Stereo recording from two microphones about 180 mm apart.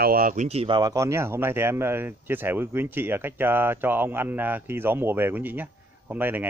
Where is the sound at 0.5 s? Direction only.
30° right (ahead or behind).